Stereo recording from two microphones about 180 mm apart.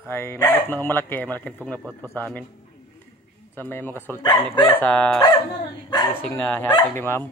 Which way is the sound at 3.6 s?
10° left (ahead or behind).